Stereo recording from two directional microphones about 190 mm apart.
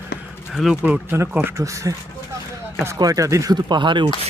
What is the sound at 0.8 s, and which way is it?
Speech, 10° right (ahead or behind).